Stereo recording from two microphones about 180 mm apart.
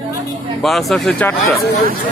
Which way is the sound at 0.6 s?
Centre (ahead or behind).